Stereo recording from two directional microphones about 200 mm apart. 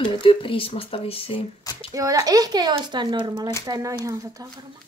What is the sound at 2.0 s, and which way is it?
A child's voice, 15° right (ahead or behind).